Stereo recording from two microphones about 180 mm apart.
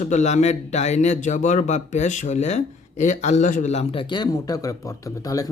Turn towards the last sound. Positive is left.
turn(degrees=20)  # may be behind; listen again after turning